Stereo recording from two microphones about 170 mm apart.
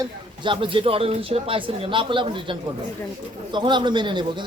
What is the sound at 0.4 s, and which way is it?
A man's voice, 30° right (ahead or behind).